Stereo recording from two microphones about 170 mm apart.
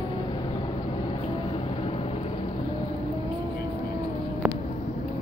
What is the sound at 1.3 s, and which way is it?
Vehicle, 30° left (ahead or behind).